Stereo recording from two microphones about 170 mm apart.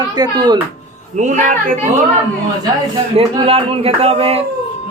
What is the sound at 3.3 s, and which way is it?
Speech, 35° right (ahead or behind).